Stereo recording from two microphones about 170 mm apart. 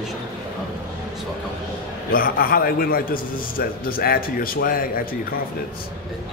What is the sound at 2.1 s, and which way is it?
A man's voice, 60° left (ahead or behind).